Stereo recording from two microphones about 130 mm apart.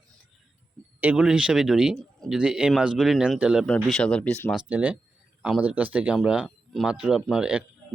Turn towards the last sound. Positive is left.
turn(degrees=-5)  # may be behind; listen again after turning